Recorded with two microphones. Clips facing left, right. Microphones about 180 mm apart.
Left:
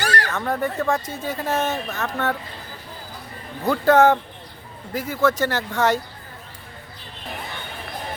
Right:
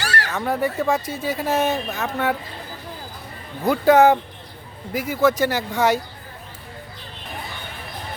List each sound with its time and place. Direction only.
0.0 s a sound: 45° left (ahead or behind)
0.3 s speech: 10° right (ahead or behind)
3.7 s speech: 15° right (ahead or behind)